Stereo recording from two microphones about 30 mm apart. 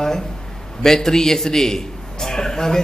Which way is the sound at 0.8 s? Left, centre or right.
Centre.